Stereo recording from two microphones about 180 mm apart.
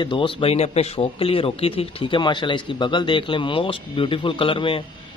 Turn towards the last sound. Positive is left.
turn(degrees=30)  # may be behind; listen again after turning